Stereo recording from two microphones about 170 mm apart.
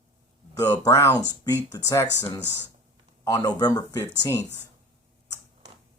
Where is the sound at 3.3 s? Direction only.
20° left (ahead or behind).